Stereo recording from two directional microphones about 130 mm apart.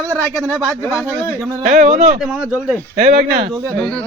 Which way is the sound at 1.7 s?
90° right.